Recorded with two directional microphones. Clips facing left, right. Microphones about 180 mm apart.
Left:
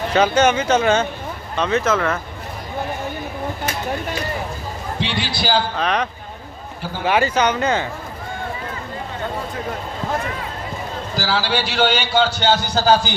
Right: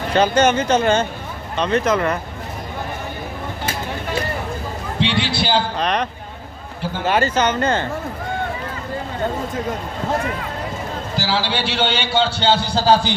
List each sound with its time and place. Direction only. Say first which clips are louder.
0.1 s speech: right 1 dB; 10° left (ahead or behind)
5.2 s a man's voice: right 1 dB; 25° right (ahead or behind)
5.8 s speech: even; 5° left (ahead or behind)
7.1 s speech: left 1 dB; 10° left (ahead or behind)
11.1 s a man's voice: left 1 dB; 25° right (ahead or behind)